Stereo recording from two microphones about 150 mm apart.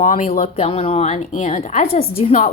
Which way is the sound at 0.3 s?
45° left (ahead or behind).